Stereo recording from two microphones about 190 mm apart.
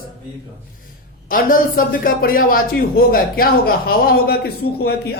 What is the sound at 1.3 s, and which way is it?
Speech, 45° left (ahead or behind).